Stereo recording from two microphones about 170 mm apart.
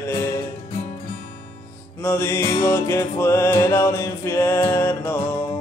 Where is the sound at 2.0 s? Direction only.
15° left (ahead or behind).